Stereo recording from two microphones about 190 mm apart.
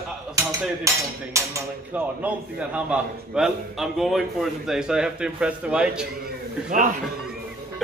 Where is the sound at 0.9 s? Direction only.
15° right (ahead or behind).